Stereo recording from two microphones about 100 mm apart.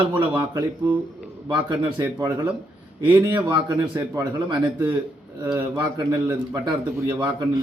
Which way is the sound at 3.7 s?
30° right (ahead or behind).